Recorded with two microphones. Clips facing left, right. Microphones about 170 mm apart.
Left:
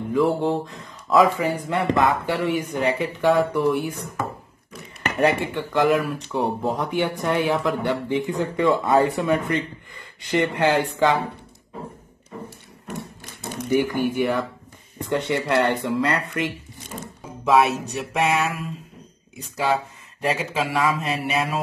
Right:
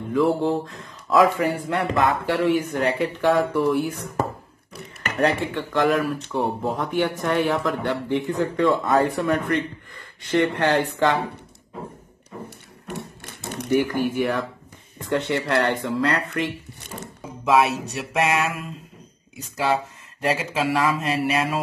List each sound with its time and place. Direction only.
0.1 s speech: centre (ahead or behind)
5.2 s speech: 5° left (ahead or behind)
12.4 s a sound: 65° right (ahead or behind)
13.7 s speech: centre (ahead or behind)